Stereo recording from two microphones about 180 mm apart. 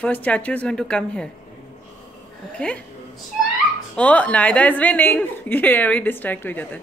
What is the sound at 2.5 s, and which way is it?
Speech, 5° left (ahead or behind).